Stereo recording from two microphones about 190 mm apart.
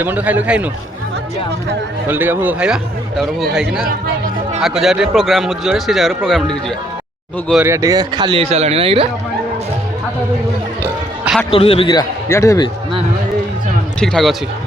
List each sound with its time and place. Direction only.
0.0 s a man's voice: 10° right (ahead or behind)
2.0 s a man's voice: 10° right (ahead or behind)
7.6 s speech: 15° right (ahead or behind); by 9.0 s 30° right (ahead or behind)
11.5 s a man's voice: 30° left (ahead or behind)
14.0 s a man's voice: centre (ahead or behind)